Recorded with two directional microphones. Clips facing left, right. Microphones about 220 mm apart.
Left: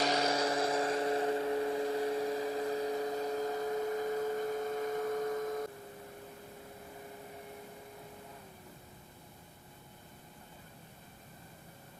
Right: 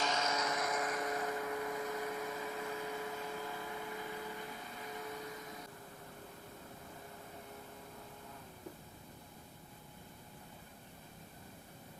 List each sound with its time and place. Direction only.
0.0 s vehicle: 35° left (ahead or behind); by 5.6 s 50° left (ahead or behind)